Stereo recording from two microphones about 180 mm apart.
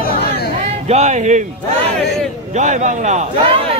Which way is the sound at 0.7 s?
40° right (ahead or behind).